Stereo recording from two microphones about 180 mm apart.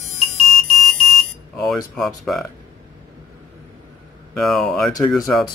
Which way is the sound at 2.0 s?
Centre (ahead or behind).